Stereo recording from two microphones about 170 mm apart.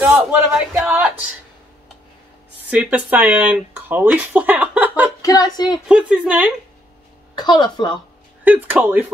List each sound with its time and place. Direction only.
0.0 s speech: 5° right (ahead or behind)
2.7 s speech: 10° right (ahead or behind)
5.2 s a woman's voice: 20° left (ahead or behind)
5.9 s speech: 5° right (ahead or behind)
7.3 s a woman's voice: 25° left (ahead or behind)
8.5 s speech: 10° right (ahead or behind)